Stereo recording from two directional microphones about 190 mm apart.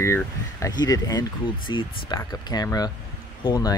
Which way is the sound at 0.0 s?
15° left (ahead or behind).